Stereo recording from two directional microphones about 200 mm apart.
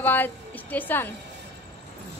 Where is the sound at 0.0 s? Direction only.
10° left (ahead or behind).